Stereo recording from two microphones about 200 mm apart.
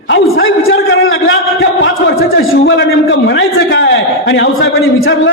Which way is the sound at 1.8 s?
55° left (ahead or behind).